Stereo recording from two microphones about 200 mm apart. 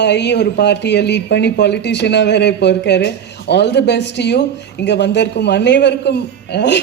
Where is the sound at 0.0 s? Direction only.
60° left (ahead or behind).